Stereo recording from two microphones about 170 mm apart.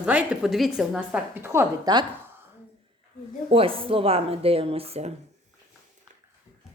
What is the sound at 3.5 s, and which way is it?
Speech, 35° right (ahead or behind).